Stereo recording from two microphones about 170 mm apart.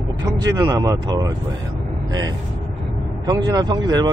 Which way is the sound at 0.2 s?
20° right (ahead or behind).